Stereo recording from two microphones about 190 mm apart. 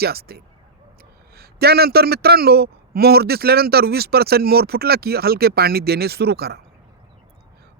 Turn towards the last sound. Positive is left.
turn(degrees=-55)  # may be behind; listen again after turning